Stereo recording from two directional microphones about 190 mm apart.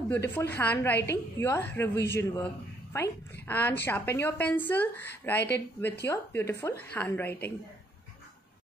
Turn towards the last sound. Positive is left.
turn(degrees=10)  # may be behind; listen again after turning